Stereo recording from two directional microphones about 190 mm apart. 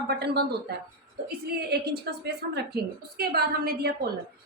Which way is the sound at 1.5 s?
55° right (ahead or behind).